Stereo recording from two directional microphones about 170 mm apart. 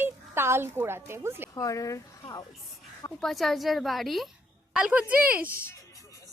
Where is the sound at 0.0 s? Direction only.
15° right (ahead or behind).